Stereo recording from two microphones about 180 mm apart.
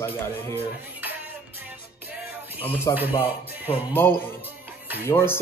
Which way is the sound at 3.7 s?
35° left (ahead or behind).